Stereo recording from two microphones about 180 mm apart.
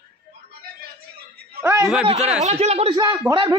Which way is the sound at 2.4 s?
35° right (ahead or behind).